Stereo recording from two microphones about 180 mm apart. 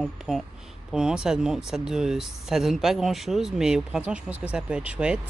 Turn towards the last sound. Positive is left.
turn(degrees=-5)  # may be behind; listen again after turning